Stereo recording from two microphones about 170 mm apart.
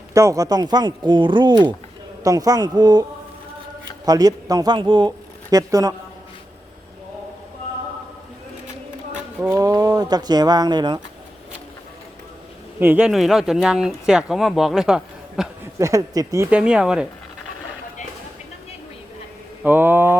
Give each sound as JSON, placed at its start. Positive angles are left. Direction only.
{"t": 0.1, "sound": "speech", "side_deg": -20}
{"t": 9.4, "sound": "speech", "side_deg": -15}
{"t": 12.8, "sound": "speech", "side_deg": -10}
{"t": 15.8, "sound": "speech", "side_deg": -20}
{"t": 16.5, "sound": "speech", "side_deg": -5}
{"t": 19.6, "sound": "a sound", "side_deg": -10}